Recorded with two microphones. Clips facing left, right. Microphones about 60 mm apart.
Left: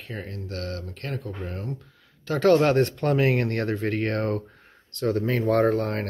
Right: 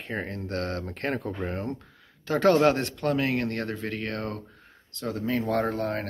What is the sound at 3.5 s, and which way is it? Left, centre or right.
Speech, centre.